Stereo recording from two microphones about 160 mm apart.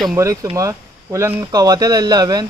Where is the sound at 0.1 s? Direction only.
20° right (ahead or behind).